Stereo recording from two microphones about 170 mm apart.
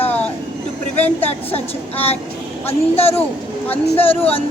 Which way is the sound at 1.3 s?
35° left (ahead or behind).